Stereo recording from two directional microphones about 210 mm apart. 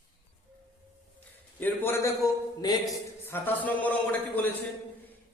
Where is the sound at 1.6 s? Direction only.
10° left (ahead or behind).